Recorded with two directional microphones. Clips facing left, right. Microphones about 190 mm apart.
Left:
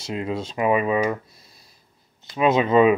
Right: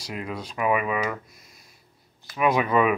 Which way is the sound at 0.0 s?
25° left (ahead or behind).